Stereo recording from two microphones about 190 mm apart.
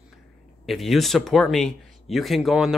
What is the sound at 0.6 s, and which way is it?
Speech, centre (ahead or behind).